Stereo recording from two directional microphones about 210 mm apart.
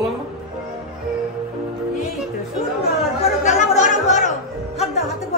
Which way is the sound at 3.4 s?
35° left (ahead or behind).